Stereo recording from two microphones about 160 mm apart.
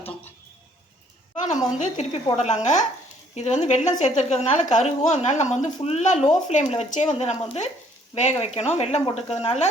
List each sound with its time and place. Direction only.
1.8 s a woman's voice: 45° left (ahead or behind)